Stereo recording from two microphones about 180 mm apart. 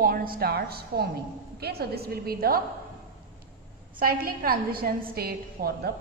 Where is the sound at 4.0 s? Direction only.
55° right (ahead or behind).